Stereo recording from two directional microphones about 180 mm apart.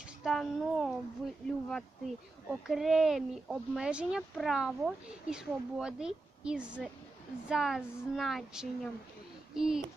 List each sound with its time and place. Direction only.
0.3 s speech: centre (ahead or behind)